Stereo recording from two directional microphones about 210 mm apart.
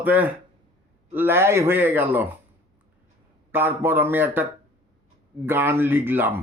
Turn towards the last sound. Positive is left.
turn(degrees=-10)  # may be behind; listen again after turning